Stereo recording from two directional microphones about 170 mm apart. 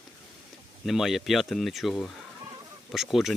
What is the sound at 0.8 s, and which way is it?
Speech, centre (ahead or behind).